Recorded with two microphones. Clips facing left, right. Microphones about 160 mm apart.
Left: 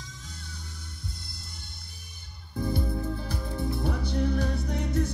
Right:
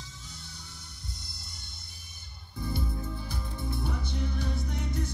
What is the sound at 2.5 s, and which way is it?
Music, 55° left (ahead or behind).